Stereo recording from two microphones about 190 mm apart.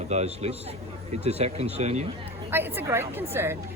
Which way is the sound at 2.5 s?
10° right (ahead or behind).